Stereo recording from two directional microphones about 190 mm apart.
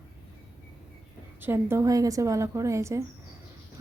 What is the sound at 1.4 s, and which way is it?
A woman's voice, 10° right (ahead or behind).